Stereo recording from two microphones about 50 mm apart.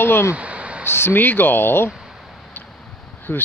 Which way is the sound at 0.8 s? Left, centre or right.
Left.